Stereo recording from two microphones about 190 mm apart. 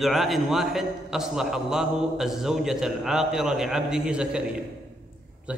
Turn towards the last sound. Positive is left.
turn(degrees=-5)  # may be behind; listen again after turning